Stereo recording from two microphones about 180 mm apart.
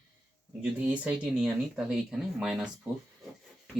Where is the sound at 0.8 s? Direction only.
10° right (ahead or behind).